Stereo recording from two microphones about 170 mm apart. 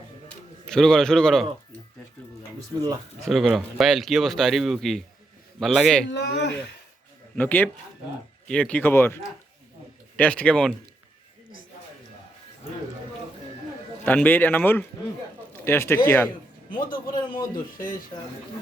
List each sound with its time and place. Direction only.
0.7 s speech: 5° left (ahead or behind)
3.2 s speech: centre (ahead or behind)
6.1 s speech: 85° left
7.3 s speech: 10° left (ahead or behind)
10.2 s speech: 5° left (ahead or behind)
14.0 s speech: 10° left (ahead or behind)
17.2 s a man's voice: 25° left (ahead or behind)